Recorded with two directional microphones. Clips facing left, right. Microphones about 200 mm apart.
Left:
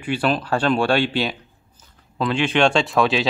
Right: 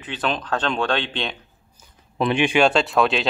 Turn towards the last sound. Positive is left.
turn(degrees=0)  # may be behind; listen again after turning